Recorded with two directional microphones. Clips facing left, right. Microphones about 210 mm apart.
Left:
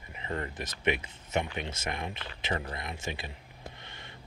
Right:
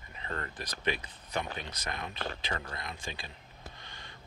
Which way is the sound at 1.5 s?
25° left (ahead or behind).